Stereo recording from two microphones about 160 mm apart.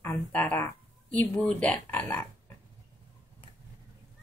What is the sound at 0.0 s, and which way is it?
Speech, 10° left (ahead or behind).